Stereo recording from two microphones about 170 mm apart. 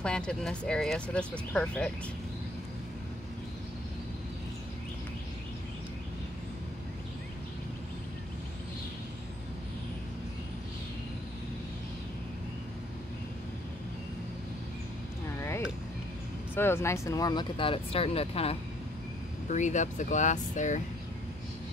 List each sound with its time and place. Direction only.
0.0 s speech: 5° left (ahead or behind)
15.3 s a sound: 15° left (ahead or behind)
16.5 s speech: 15° left (ahead or behind); by 20.8 s 45° left (ahead or behind)